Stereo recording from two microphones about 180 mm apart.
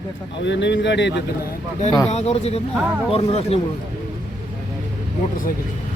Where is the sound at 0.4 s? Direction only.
75° left (ahead or behind).